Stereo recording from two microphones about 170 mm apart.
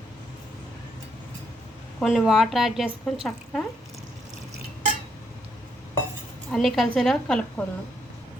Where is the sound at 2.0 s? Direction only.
Centre (ahead or behind).